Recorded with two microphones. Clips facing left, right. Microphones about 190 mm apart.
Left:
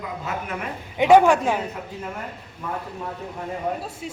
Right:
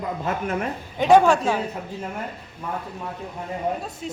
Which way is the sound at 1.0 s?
15° left (ahead or behind).